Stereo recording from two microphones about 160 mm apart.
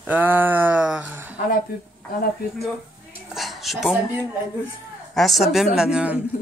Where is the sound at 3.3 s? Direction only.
Centre (ahead or behind).